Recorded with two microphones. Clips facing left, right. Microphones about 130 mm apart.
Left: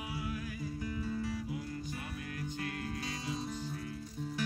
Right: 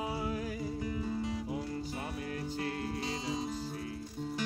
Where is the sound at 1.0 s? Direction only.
25° right (ahead or behind).